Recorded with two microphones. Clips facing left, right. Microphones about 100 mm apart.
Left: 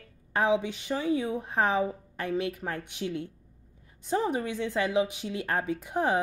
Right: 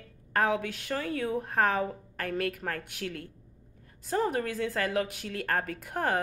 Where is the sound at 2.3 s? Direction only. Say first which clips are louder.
Left 1 dB; 60° right (ahead or behind).